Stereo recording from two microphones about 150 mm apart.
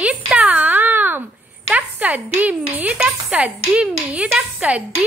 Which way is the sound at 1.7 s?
10° right (ahead or behind).